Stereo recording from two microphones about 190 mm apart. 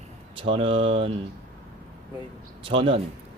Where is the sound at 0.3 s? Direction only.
30° right (ahead or behind).